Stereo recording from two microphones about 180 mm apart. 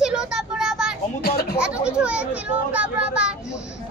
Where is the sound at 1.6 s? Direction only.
5° right (ahead or behind).